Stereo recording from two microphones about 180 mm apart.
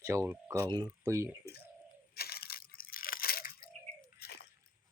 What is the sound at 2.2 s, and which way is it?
Crushing, 60° left (ahead or behind).